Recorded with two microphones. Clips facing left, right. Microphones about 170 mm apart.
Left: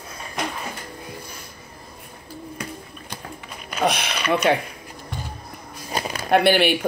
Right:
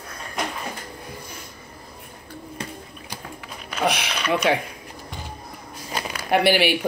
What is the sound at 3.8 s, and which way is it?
Speech, 10° right (ahead or behind).